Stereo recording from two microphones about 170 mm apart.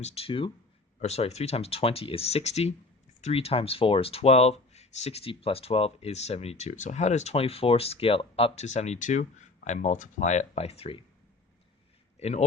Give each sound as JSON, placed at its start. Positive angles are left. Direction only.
{"t": 0.0, "sound": "speech", "side_deg": 35}
{"t": 12.2, "sound": "speech", "side_deg": 40}